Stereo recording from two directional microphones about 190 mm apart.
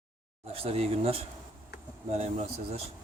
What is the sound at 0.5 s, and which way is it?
Speech, 30° right (ahead or behind).